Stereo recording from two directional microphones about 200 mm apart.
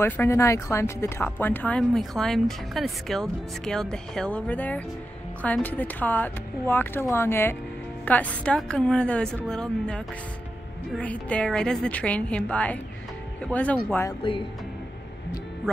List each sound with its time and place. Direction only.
0.0 s a woman's voice: 10° left (ahead or behind)
14.2 s speech: 25° left (ahead or behind)